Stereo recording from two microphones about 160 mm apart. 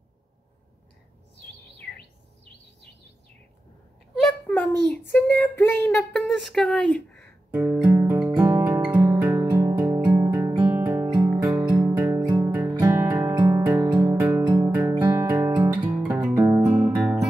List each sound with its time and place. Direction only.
4.1 s a sound: centre (ahead or behind)
5.1 s child singing: 10° left (ahead or behind)
5.9 s speech: centre (ahead or behind)
7.8 s music: 15° right (ahead or behind)
15.9 s music: 5° right (ahead or behind)
16.3 s music: 20° right (ahead or behind)
16.9 s music: centre (ahead or behind)